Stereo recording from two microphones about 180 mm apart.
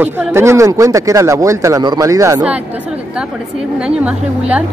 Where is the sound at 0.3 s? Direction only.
15° right (ahead or behind).